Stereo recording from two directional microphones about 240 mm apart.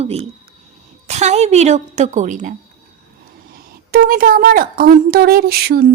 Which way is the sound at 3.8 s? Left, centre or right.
Right.